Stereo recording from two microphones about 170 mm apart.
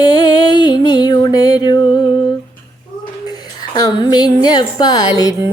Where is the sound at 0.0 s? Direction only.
25° left (ahead or behind).